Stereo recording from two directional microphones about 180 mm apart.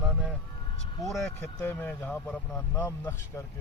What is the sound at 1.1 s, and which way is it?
Speech, 10° left (ahead or behind).